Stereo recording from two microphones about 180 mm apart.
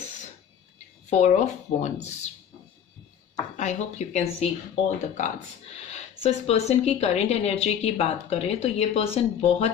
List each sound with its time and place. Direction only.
1.1 s a woman's voice: 40° left (ahead or behind)
3.6 s a woman's voice: 40° left (ahead or behind)